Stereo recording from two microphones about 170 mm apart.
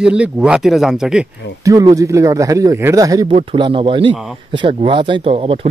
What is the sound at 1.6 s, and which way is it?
A man's voice, 20° right (ahead or behind).